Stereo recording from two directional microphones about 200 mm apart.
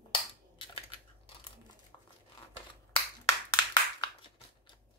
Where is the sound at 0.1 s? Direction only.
25° left (ahead or behind).